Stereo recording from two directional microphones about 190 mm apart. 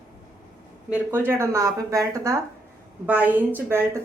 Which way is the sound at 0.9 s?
10° right (ahead or behind).